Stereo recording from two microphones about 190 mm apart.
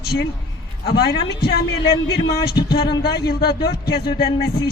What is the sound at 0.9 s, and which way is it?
Speech, 55° left (ahead or behind).